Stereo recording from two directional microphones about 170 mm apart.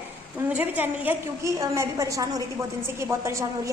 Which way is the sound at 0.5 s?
10° right (ahead or behind).